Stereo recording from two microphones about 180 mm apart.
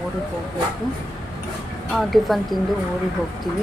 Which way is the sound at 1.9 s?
Centre (ahead or behind).